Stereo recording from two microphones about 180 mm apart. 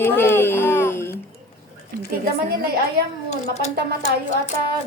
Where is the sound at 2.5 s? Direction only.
60° right (ahead or behind).